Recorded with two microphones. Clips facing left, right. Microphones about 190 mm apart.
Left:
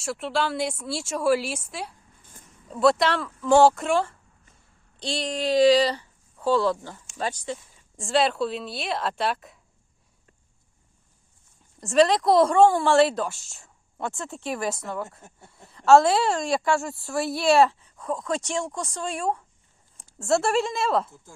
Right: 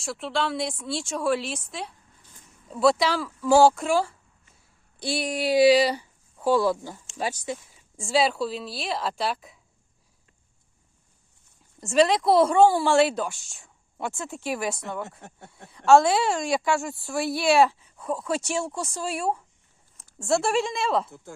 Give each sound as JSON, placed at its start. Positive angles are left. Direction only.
{"t": 0.0, "sound": "speech", "side_deg": 0}
{"t": 11.8, "sound": "speech", "side_deg": 0}